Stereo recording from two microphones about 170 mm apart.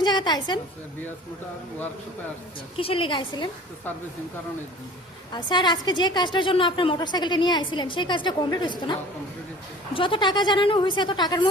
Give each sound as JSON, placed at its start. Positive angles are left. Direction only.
{"t": 0.0, "sound": "a woman's voice", "side_deg": 25}
{"t": 2.7, "sound": "a woman's voice", "side_deg": 35}
{"t": 5.3, "sound": "a woman's voice", "side_deg": 25}